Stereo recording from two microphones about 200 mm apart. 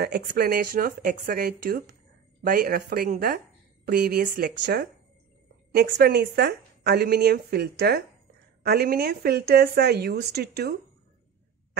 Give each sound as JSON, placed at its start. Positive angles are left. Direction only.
{"t": 0.0, "sound": "a woman's voice", "side_deg": -55}